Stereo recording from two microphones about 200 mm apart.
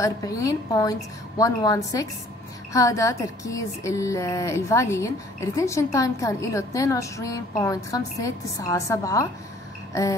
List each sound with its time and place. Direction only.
0.0 s a woman's voice: 15° left (ahead or behind)